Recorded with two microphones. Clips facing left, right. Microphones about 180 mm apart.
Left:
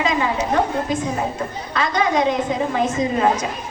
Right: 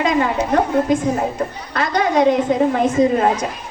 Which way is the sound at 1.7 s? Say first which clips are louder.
Right 2 dB; 55° right (ahead or behind).